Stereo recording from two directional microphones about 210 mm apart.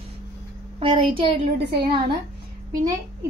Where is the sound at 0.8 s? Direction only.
25° right (ahead or behind).